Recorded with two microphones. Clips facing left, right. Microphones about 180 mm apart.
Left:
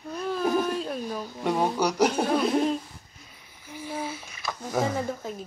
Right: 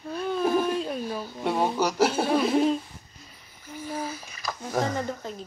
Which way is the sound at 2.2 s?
5° right (ahead or behind).